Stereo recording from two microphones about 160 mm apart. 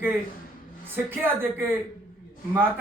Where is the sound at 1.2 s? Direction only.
15° right (ahead or behind).